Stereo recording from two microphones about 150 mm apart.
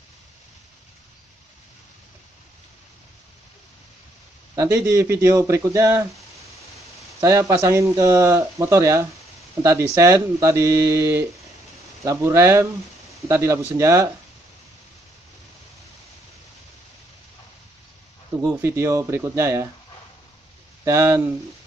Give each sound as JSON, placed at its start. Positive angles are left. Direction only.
{"t": 4.6, "sound": "a man's voice", "side_deg": -20}
{"t": 7.2, "sound": "a man's voice", "side_deg": -20}
{"t": 18.4, "sound": "a man's voice", "side_deg": -15}
{"t": 20.8, "sound": "speech", "side_deg": -20}